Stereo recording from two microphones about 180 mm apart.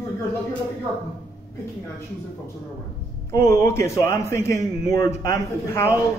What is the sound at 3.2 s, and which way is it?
Speech, 15° left (ahead or behind).